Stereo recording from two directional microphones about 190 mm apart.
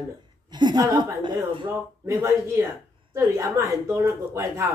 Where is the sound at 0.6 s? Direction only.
20° right (ahead or behind).